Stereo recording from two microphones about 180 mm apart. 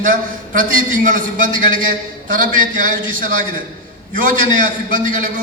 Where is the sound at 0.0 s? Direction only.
50° right (ahead or behind).